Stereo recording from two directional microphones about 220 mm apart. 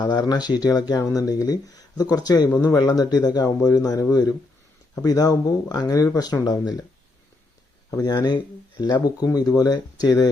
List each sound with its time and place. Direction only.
0.0 s speech: 15° left (ahead or behind)
7.9 s speech: 20° left (ahead or behind)